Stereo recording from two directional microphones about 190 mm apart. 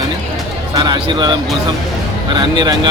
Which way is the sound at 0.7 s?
25° right (ahead or behind).